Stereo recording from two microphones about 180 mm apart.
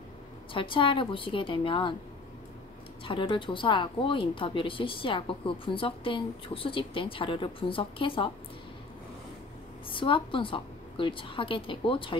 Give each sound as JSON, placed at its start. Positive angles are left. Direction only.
{"t": 0.5, "sound": "a woman's voice", "side_deg": 30}
{"t": 3.1, "sound": "a woman's voice", "side_deg": 30}
{"t": 9.9, "sound": "a woman's voice", "side_deg": 30}